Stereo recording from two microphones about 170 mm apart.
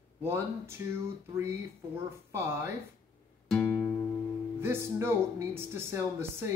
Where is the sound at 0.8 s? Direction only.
20° right (ahead or behind).